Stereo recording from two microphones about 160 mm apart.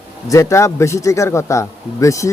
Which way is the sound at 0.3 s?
20° left (ahead or behind).